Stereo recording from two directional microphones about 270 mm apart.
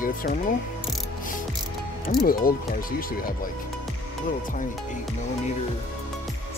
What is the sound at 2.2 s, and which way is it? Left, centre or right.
Speech, left.